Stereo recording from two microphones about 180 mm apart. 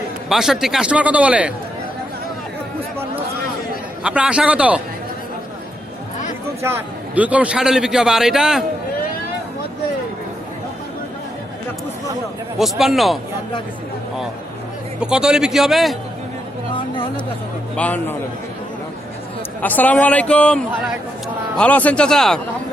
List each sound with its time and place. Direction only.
0.3 s a man's voice: centre (ahead or behind)
4.0 s a man's voice: 5° right (ahead or behind)
6.6 s a man's voice: 15° right (ahead or behind)
12.5 s a man's voice: centre (ahead or behind)
15.0 s a man's voice: 5° right (ahead or behind)
16.7 s chatter: 30° left (ahead or behind)
17.7 s a man's voice: 10° left (ahead or behind)
19.6 s a man's voice: 10° left (ahead or behind)